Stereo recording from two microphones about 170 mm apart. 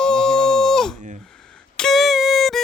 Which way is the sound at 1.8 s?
Centre (ahead or behind).